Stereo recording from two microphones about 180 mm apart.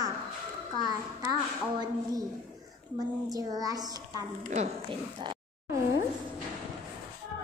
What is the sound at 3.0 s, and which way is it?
Speech, 20° right (ahead or behind).